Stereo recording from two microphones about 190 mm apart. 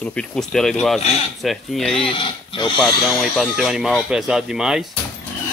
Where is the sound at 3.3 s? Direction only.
Centre (ahead or behind).